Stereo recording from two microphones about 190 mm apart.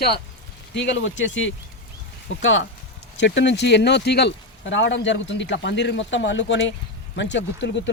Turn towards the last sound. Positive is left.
turn(degrees=70)  # may be behind; listen again after turning